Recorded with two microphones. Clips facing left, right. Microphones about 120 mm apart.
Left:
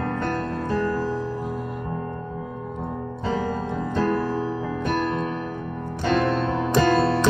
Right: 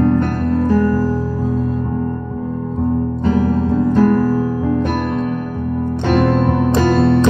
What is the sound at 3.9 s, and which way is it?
Music, 45° right (ahead or behind).